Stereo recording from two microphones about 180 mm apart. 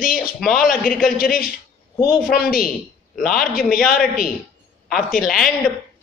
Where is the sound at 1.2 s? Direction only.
55° left (ahead or behind).